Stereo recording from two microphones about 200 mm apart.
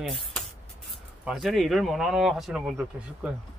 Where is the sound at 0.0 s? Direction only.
Centre (ahead or behind).